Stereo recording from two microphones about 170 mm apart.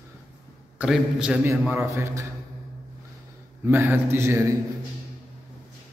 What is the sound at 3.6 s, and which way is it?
Speech, 15° right (ahead or behind).